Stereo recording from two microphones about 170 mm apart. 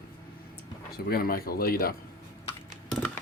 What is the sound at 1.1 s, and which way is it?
Speech, 60° left (ahead or behind).